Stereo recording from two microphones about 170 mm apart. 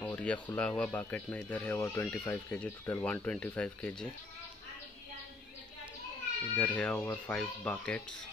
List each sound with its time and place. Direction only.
0.0 s speech: 10° left (ahead or behind)
6.5 s speech: 10° left (ahead or behind)